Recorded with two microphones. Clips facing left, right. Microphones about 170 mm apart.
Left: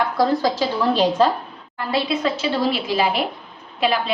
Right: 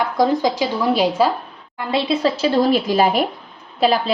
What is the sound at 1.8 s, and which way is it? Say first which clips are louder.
Speech: right 2 dB; 20° right (ahead or behind).